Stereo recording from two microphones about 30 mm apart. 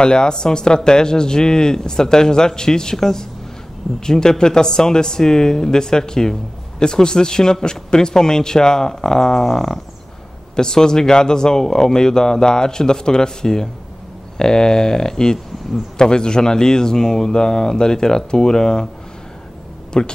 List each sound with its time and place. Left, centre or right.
0.0 s speech: left
19.9 s speech: left